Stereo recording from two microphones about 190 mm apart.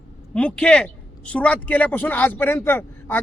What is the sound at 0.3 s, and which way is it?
A man's voice, 5° left (ahead or behind).